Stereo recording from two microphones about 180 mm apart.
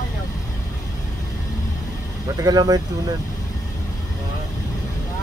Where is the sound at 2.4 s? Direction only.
20° right (ahead or behind).